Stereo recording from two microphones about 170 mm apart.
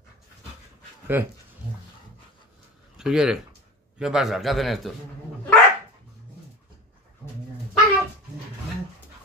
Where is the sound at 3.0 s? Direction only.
5° right (ahead or behind).